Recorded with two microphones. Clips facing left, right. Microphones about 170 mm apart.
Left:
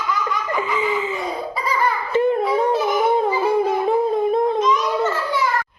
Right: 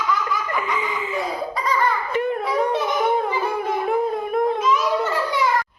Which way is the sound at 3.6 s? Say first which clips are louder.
Left 3 dB; 30° left (ahead or behind).